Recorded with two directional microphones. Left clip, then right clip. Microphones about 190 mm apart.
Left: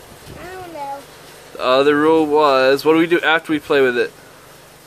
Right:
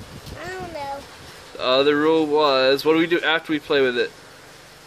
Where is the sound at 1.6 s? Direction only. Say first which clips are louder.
Left 4 dB; 15° left (ahead or behind).